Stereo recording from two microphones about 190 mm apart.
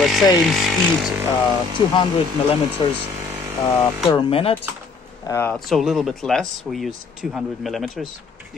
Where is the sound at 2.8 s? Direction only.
30° left (ahead or behind).